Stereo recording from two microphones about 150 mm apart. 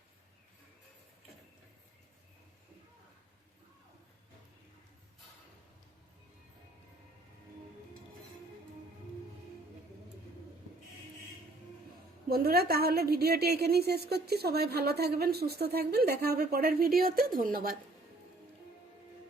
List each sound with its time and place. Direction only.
12.3 s a woman's voice: 90° right; by 17.7 s 70° right (ahead or behind)